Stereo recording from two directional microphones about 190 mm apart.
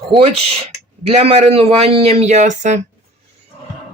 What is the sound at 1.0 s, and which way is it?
Speech, 30° right (ahead or behind).